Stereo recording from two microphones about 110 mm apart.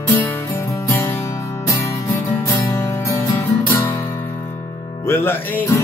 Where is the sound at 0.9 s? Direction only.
25° left (ahead or behind).